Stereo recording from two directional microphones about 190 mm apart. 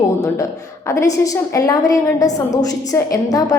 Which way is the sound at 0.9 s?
15° left (ahead or behind).